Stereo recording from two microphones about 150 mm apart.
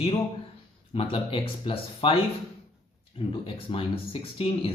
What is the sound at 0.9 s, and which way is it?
Speech, 35° left (ahead or behind).